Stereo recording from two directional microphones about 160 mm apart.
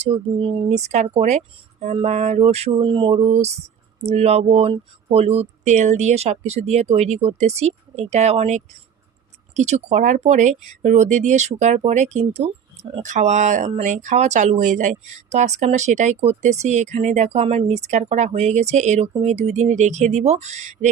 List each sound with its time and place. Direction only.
0.0 s speech: 40° right (ahead or behind)